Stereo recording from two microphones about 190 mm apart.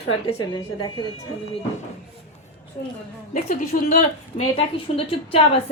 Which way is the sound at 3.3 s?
40° left (ahead or behind).